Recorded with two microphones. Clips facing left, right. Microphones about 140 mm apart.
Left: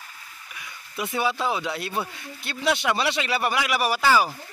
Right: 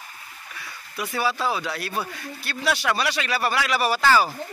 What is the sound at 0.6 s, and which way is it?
Speech, 20° left (ahead or behind).